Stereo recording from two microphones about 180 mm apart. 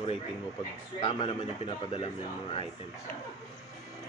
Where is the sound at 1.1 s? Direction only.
30° left (ahead or behind).